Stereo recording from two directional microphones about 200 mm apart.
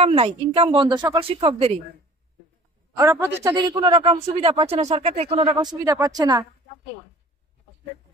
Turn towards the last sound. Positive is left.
turn(degrees=-20)  # may be behind; listen again after turning